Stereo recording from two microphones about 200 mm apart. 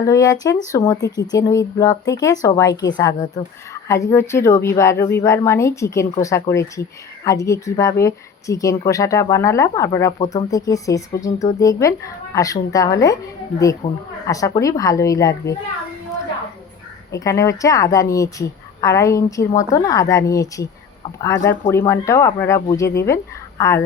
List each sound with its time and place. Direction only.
0.0 s a woman's voice: 15° left (ahead or behind)
13.8 s a woman's voice: 30° left (ahead or behind)
14.3 s a woman's voice: 15° left (ahead or behind)
17.1 s a woman's voice: 15° left (ahead or behind)